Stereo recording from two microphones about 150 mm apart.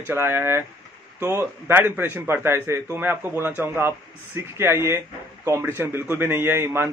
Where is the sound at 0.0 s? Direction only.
15° right (ahead or behind).